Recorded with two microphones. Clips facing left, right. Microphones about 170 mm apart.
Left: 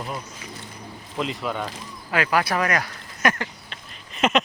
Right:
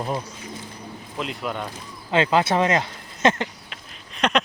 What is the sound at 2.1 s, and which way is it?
Speech, 25° right (ahead or behind).